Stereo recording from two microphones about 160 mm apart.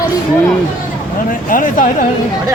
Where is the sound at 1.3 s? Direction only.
60° left (ahead or behind).